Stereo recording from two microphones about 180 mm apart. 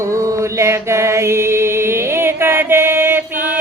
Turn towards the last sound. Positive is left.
turn(degrees=-10)  # may be behind; listen again after turning